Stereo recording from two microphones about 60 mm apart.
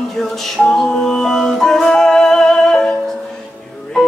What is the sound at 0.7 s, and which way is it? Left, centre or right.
Music, centre.